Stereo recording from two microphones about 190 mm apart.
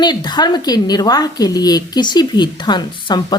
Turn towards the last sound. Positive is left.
turn(degrees=20)  # may be behind; listen again after turning